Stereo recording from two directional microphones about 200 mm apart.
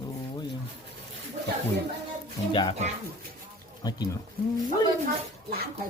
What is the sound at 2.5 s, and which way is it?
Speech, 25° left (ahead or behind).